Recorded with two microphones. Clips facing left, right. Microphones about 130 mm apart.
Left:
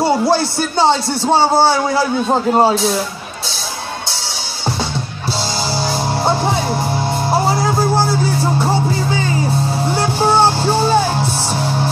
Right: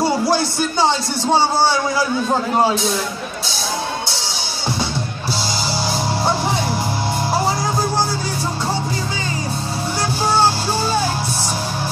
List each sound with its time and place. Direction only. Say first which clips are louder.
2.5 s speech: left 4 dB; 30° left (ahead or behind)
7.4 s music: left 4 dB; 25° left (ahead or behind)
9.9 s music: left 4 dB; 20° left (ahead or behind)